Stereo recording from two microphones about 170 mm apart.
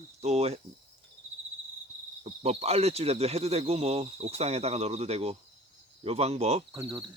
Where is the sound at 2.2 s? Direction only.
35° right (ahead or behind).